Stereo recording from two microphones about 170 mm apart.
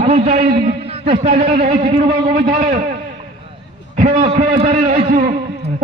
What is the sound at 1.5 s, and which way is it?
Speech, 60° right (ahead or behind).